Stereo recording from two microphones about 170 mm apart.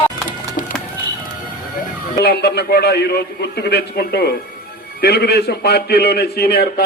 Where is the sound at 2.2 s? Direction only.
70° left (ahead or behind).